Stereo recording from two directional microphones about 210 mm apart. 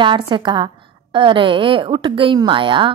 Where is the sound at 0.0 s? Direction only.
25° right (ahead or behind).